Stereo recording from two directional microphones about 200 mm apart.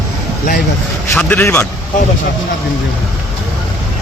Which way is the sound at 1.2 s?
10° left (ahead or behind).